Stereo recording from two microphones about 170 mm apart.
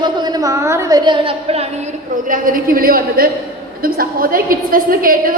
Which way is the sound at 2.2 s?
55° right (ahead or behind).